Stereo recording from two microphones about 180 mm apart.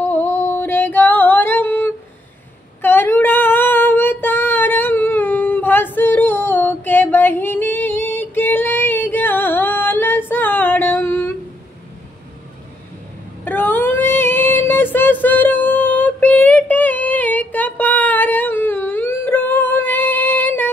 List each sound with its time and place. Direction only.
0.1 s female singing: 10° left (ahead or behind)
2.8 s child singing: 10° left (ahead or behind)
13.4 s a sound: 10° left (ahead or behind)